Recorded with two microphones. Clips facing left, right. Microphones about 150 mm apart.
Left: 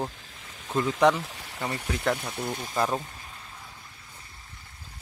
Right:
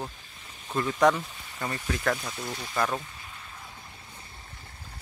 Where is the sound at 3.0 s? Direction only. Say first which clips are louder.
Left 2 dB; 40° left (ahead or behind).